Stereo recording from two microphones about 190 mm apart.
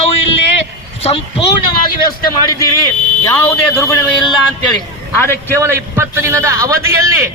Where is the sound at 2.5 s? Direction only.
15° left (ahead or behind).